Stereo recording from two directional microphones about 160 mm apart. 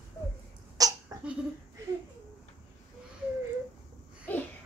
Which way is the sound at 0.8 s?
20° right (ahead or behind).